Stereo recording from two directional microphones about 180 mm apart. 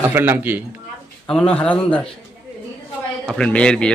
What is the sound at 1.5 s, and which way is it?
Speech, 5° left (ahead or behind).